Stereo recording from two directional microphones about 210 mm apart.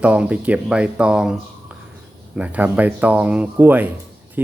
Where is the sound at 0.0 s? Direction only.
5° right (ahead or behind).